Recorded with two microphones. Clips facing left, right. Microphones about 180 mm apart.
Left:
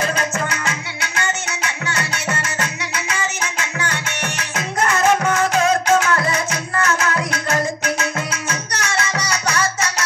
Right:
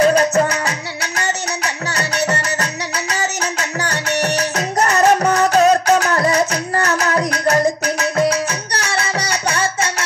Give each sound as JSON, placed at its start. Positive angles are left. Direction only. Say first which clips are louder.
{"t": 0.0, "sound": "music", "louder": "right 9 dB", "side_deg": -35}